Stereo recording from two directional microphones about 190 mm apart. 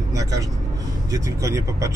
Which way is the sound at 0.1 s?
15° right (ahead or behind).